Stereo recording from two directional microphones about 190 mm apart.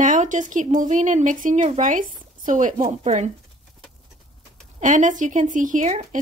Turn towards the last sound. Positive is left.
turn(degrees=-40)  # may be behind; listen again after turning